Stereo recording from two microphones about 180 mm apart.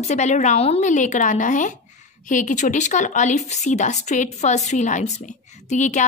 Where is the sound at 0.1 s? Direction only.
40° left (ahead or behind).